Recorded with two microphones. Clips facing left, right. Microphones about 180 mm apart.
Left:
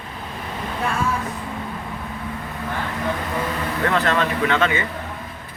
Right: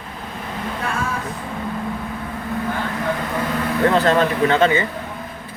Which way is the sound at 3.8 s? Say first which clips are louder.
Right 5 dB; 35° right (ahead or behind).